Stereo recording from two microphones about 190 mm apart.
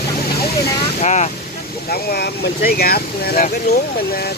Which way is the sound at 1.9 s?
55° left (ahead or behind).